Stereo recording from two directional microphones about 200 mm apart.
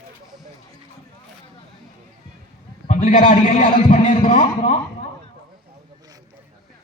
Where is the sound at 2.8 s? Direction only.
40° left (ahead or behind).